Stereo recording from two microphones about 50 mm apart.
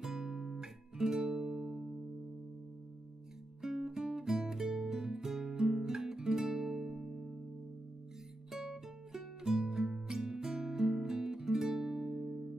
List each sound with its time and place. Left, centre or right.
0.0 s music: centre
3.6 s music: centre
8.5 s music: centre